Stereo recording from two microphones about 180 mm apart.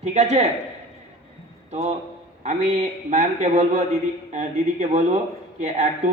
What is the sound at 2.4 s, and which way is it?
A man's voice, 40° right (ahead or behind).